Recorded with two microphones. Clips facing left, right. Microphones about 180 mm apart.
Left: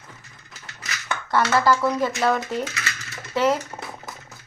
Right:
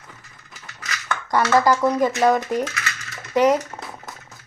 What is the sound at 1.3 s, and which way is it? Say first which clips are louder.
A woman's voice: right 2 dB; 15° right (ahead or behind).